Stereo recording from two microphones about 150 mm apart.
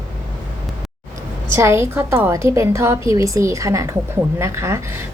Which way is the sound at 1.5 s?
15° right (ahead or behind).